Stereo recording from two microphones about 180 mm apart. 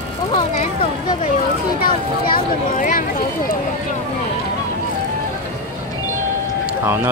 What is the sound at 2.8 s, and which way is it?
Speech, 50° left (ahead or behind).